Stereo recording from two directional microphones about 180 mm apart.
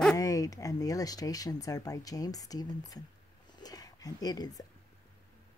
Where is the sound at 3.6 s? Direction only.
20° left (ahead or behind).